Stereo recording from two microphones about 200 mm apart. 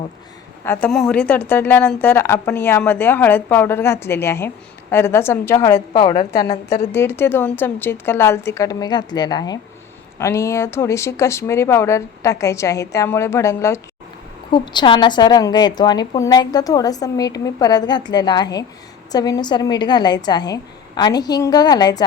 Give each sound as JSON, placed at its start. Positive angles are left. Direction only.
{"t": 0.6, "sound": "a woman's voice", "side_deg": 10}